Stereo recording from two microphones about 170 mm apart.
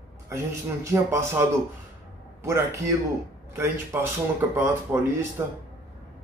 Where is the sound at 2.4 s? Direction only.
15° right (ahead or behind).